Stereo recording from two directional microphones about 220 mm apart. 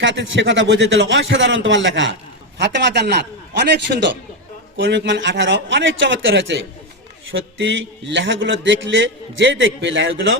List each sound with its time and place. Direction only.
0.0 s a man's voice: 55° right (ahead or behind)